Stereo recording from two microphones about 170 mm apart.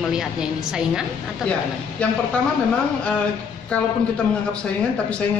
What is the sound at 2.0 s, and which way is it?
Speech, 5° left (ahead or behind).